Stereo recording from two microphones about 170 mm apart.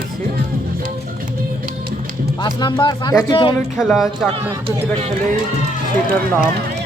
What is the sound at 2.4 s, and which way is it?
Speech, 25° left (ahead or behind).